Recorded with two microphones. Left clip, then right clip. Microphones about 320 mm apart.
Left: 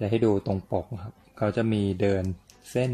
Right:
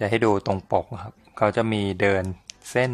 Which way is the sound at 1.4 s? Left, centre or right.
Right.